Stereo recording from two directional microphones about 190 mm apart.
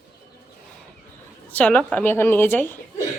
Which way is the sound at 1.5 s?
5° left (ahead or behind).